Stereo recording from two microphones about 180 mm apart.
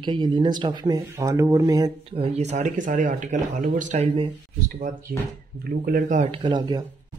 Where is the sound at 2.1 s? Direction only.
35° right (ahead or behind).